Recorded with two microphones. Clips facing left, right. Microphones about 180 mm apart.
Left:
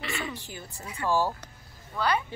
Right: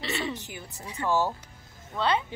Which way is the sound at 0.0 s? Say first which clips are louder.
Right 3 dB; 35° right (ahead or behind).